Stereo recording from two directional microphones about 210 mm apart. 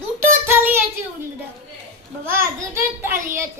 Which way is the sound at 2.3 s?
10° right (ahead or behind).